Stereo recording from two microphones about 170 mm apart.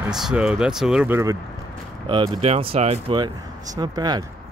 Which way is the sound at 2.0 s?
30° right (ahead or behind).